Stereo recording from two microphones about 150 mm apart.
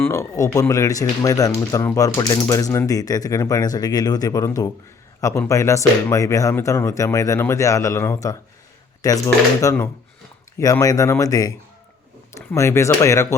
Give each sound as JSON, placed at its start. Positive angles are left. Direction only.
{"t": 0.0, "sound": "speech", "side_deg": 20}